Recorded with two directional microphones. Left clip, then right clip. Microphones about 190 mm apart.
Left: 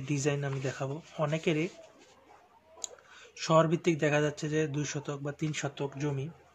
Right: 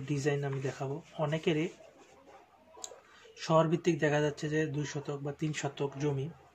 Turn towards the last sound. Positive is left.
turn(degrees=15)  # may be behind; listen again after turning